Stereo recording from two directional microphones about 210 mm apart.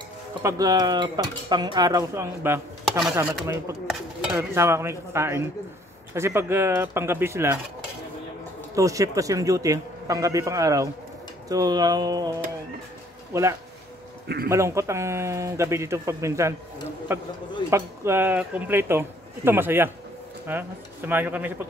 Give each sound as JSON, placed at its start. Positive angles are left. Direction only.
{"t": 0.4, "sound": "dishes", "side_deg": -15}
{"t": 3.4, "sound": "speech", "side_deg": -15}
{"t": 8.7, "sound": "speech", "side_deg": -15}
{"t": 14.2, "sound": "a man's voice", "side_deg": -50}
{"t": 14.5, "sound": "speech", "side_deg": -15}